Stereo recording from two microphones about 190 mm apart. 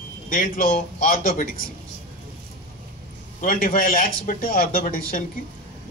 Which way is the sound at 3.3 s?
45° left (ahead or behind).